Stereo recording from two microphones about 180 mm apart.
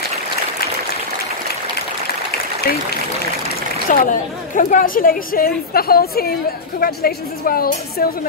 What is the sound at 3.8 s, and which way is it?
A woman's voice, 50° left (ahead or behind).